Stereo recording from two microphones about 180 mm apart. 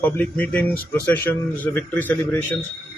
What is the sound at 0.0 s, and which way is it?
Speech, 10° left (ahead or behind).